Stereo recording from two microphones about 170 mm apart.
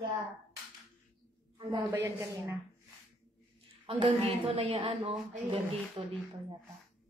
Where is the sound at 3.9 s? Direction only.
30° right (ahead or behind).